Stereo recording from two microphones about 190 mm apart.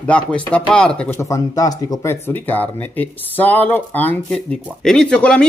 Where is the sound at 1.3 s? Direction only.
20° left (ahead or behind).